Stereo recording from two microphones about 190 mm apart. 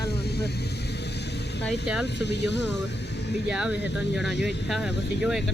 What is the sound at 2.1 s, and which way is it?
Speech, 65° left (ahead or behind).